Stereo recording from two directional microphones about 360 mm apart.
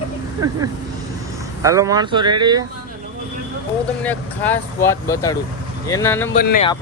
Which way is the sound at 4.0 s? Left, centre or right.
Centre.